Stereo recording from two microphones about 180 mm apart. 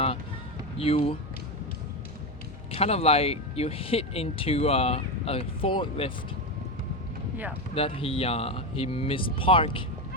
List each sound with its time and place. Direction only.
0.8 s speech: 30° left (ahead or behind)
2.7 s speech: 35° left (ahead or behind)
7.8 s speech: 30° left (ahead or behind)